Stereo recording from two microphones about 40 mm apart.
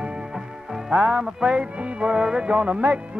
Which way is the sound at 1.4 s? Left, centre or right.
Right.